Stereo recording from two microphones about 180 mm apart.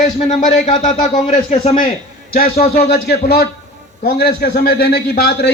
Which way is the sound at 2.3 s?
55° left (ahead or behind).